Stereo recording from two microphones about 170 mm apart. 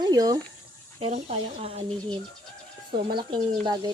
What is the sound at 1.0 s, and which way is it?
Speech, 40° right (ahead or behind).